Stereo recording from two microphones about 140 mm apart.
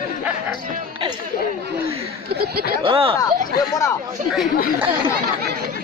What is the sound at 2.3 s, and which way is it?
Speech, 90° right.